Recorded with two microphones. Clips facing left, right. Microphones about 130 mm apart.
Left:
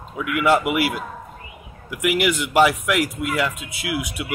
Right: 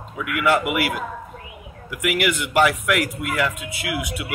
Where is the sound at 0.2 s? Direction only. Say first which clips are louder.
Left 2 dB; 25° left (ahead or behind).